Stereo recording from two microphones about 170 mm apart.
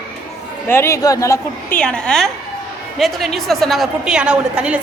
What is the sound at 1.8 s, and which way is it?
A woman's voice, 5° left (ahead or behind).